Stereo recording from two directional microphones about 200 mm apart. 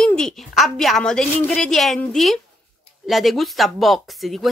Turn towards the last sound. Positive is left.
turn(degrees=0)  # may be behind; listen again after turning